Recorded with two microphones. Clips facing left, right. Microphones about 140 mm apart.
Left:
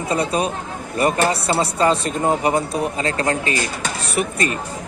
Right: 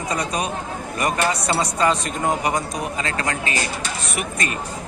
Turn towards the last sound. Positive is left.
turn(degrees=35)  # may be behind; listen again after turning